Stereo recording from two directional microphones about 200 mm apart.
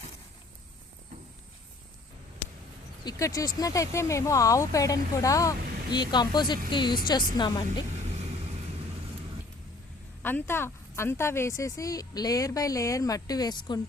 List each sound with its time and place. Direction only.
3.0 s speech: 20° left (ahead or behind)
10.2 s speech: 10° left (ahead or behind)